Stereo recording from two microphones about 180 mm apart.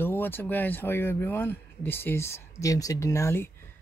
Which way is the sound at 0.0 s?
10° left (ahead or behind).